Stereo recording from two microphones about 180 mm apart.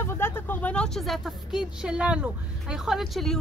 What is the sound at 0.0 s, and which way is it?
Speech, 15° left (ahead or behind).